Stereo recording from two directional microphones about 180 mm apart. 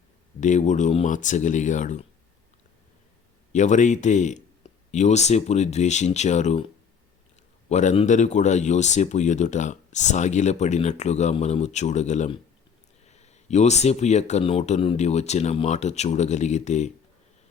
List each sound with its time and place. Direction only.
0.3 s speech: 40° left (ahead or behind)
3.5 s speech: 40° left (ahead or behind)
7.7 s speech: 40° left (ahead or behind)